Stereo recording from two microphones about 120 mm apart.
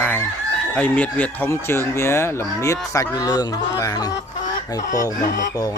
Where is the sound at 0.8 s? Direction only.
15° left (ahead or behind).